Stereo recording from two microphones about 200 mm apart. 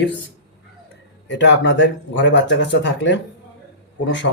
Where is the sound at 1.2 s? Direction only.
65° left (ahead or behind).